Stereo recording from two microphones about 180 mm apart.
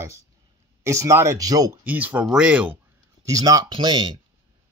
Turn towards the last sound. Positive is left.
turn(degrees=-25)  # may be behind; listen again after turning